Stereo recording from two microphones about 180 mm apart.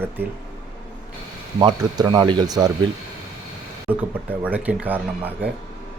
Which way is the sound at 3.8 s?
10° right (ahead or behind).